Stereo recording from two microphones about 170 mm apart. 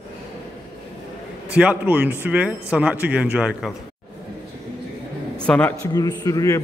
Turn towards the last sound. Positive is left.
turn(degrees=20)  # may be behind; listen again after turning